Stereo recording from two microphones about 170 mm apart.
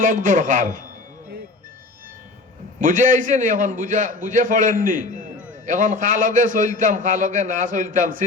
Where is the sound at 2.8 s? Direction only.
50° right (ahead or behind).